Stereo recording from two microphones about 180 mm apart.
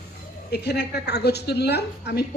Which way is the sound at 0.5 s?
65° left (ahead or behind).